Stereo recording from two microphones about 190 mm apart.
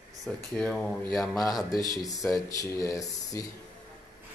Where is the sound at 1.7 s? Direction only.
20° left (ahead or behind).